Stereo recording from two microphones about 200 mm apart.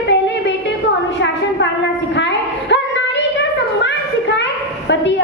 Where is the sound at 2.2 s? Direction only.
60° left (ahead or behind).